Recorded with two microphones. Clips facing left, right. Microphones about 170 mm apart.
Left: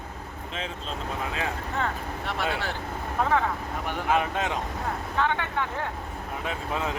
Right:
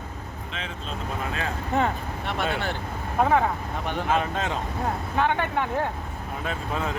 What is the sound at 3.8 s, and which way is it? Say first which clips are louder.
Speech: right 1 dB; 15° left (ahead or behind).